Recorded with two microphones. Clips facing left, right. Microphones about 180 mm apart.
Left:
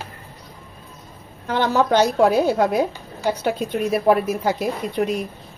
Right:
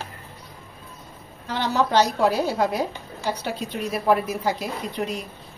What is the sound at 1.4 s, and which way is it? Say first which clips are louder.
A woman's voice: left 4 dB; 55° left (ahead or behind).